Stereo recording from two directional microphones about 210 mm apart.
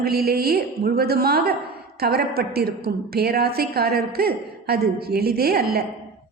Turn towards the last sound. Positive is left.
turn(degrees=-50)  # may be behind; listen again after turning